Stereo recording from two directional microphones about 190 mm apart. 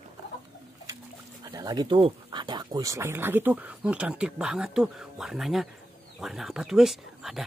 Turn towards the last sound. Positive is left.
turn(degrees=0)  # may be behind; listen again after turning